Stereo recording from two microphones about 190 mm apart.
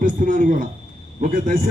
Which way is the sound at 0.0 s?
45° right (ahead or behind).